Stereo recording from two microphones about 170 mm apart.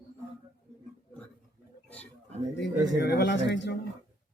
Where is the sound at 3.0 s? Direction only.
70° left (ahead or behind); by 3.7 s 90° left.